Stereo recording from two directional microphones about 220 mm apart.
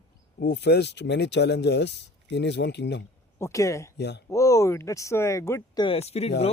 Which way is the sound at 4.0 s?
50° left (ahead or behind).